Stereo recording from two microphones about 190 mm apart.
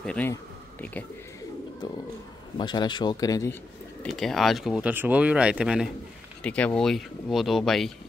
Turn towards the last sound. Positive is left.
turn(degrees=0)  # may be behind; listen again after turning